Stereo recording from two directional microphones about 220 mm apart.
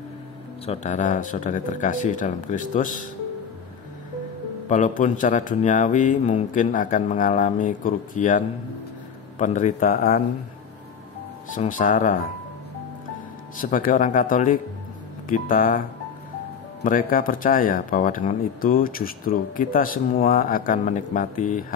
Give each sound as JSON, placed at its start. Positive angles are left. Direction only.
{"t": 0.7, "sound": "speech", "side_deg": 35}
{"t": 4.6, "sound": "speech", "side_deg": 35}
{"t": 11.5, "sound": "speech", "side_deg": 35}
{"t": 13.6, "sound": "speech", "side_deg": 40}
{"t": 16.8, "sound": "speech", "side_deg": 40}